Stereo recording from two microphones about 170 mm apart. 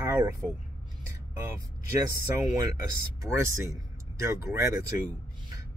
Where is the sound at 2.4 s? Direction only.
20° right (ahead or behind).